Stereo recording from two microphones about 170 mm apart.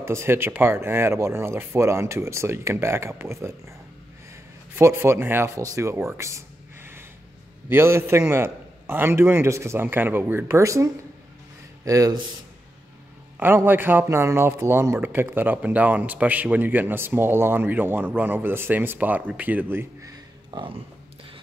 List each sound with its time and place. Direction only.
0.0 s a man's voice: 15° right (ahead or behind)
4.7 s a man's voice: 15° right (ahead or behind)
13.4 s a man's voice: 10° right (ahead or behind); by 21.3 s 30° right (ahead or behind)